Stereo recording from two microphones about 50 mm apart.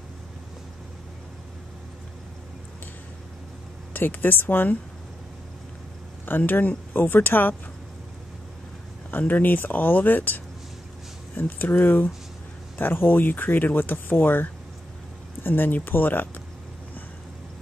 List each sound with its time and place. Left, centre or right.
3.9 s speech: left
6.2 s speech: left
9.2 s speech: left